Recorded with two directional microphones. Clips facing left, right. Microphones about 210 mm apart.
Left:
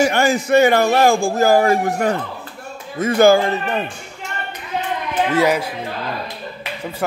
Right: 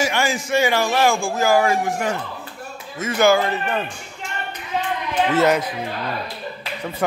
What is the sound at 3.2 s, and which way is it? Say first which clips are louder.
Speech: left 4 dB; 30° left (ahead or behind).